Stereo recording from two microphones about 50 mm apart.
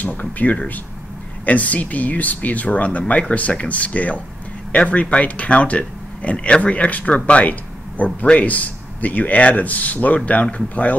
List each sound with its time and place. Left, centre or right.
0.0 s speech: left